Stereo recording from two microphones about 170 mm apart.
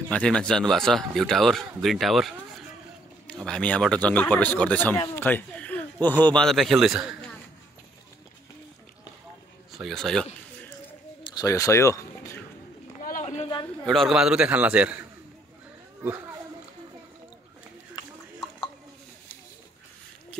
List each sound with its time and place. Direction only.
0.1 s a man's voice: 5° left (ahead or behind)
9.7 s speech: centre (ahead or behind)
11.2 s speech: 20° left (ahead or behind)
13.0 s a sound: 50° left (ahead or behind)
13.8 s a man's voice: centre (ahead or behind)